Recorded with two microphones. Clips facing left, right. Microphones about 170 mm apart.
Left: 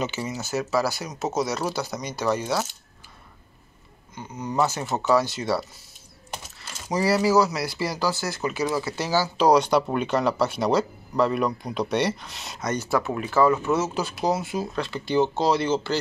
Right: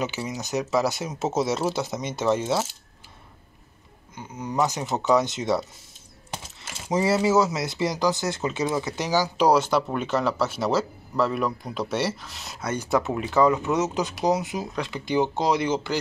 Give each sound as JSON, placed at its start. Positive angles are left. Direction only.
{"t": 0.0, "sound": "speech", "side_deg": -10}
{"t": 4.1, "sound": "speech", "side_deg": -10}
{"t": 6.9, "sound": "speech", "side_deg": -20}